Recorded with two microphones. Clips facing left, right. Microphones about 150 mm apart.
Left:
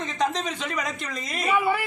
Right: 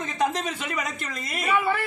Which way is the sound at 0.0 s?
5° right (ahead or behind).